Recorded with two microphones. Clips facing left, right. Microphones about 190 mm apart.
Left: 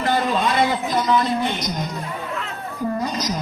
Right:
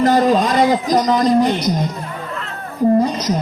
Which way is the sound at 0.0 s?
40° right (ahead or behind).